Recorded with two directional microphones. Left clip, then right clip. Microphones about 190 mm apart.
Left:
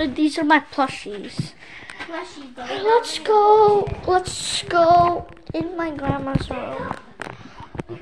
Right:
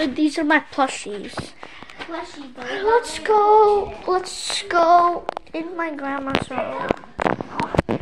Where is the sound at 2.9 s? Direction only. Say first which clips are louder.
Left 1 dB; 5° left (ahead or behind).